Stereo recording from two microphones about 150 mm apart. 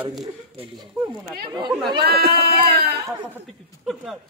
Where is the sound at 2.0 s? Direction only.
90° right.